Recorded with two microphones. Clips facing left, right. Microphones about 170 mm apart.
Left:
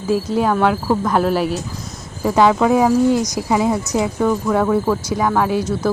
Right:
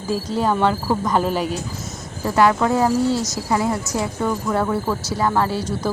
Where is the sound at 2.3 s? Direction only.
15° left (ahead or behind).